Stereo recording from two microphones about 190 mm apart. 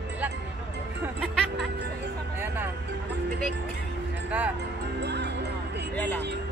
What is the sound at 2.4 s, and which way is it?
Music, 10° right (ahead or behind).